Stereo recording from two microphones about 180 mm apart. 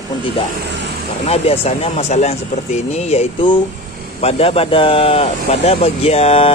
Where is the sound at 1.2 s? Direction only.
35° left (ahead or behind).